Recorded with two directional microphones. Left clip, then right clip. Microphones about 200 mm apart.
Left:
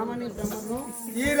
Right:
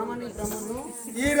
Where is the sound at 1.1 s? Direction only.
15° right (ahead or behind).